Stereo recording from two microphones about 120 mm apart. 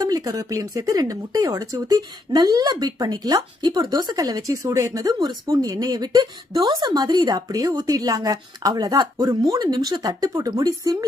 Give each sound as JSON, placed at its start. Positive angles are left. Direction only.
{"t": 0.0, "sound": "speech", "side_deg": -30}